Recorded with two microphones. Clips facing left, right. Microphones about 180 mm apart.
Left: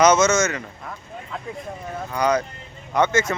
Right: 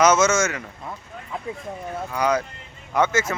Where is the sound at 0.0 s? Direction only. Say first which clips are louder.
Left 1 dB; 5° right (ahead or behind).